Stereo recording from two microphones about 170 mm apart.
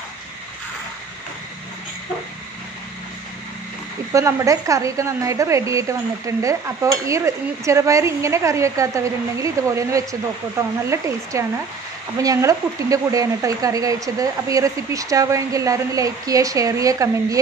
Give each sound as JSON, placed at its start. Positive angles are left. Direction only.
{"t": 4.1, "sound": "a woman's voice", "side_deg": -20}